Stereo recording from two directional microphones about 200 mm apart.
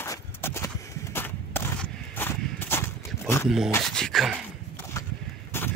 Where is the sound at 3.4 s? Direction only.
Centre (ahead or behind).